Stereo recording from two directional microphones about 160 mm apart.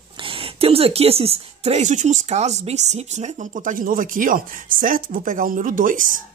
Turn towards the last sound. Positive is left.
turn(degrees=-55)  # may be behind; listen again after turning